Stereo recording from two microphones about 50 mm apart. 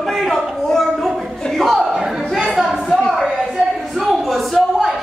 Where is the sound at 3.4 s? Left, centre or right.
Centre.